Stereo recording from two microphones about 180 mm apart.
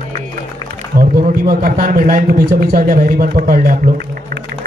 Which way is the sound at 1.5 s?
50° right (ahead or behind).